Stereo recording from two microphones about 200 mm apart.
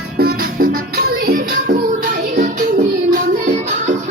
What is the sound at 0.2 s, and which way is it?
Music, 50° right (ahead or behind).